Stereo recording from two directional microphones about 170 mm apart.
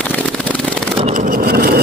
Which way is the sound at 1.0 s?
50° right (ahead or behind).